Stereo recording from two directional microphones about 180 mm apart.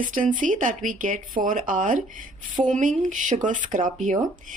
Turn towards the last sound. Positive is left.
turn(degrees=-45)  # may be behind; listen again after turning